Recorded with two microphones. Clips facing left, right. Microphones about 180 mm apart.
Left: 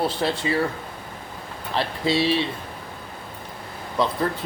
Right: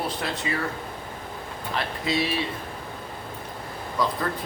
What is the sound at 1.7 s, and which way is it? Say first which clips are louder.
Speech: left 4 dB; 30° left (ahead or behind).